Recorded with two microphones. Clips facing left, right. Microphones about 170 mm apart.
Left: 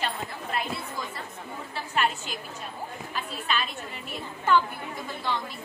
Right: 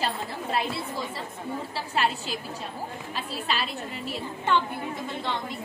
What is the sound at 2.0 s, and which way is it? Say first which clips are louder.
Speech: right 1 dB; 30° right (ahead or behind).